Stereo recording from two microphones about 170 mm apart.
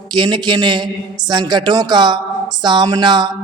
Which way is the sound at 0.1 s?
25° right (ahead or behind).